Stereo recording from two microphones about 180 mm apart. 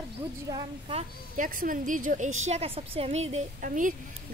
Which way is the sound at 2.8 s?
35° right (ahead or behind).